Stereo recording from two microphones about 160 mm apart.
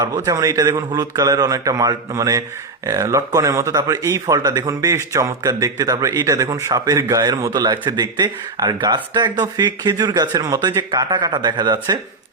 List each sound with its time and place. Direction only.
0.0 s speech: 20° right (ahead or behind)